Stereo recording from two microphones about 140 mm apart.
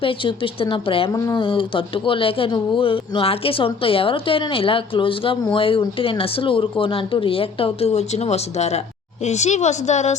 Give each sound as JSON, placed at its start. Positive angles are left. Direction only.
{"t": 0.0, "sound": "speech", "side_deg": 40}
{"t": 1.1, "sound": "speech", "side_deg": 25}
{"t": 1.4, "sound": "a woman's voice", "side_deg": 35}